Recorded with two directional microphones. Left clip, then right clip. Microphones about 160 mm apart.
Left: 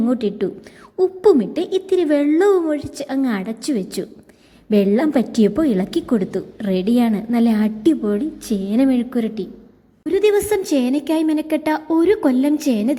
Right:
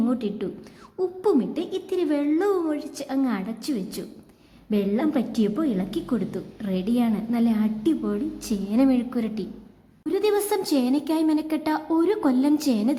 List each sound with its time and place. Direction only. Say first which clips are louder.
0.0 s a woman's voice: left 7 dB; 25° left (ahead or behind)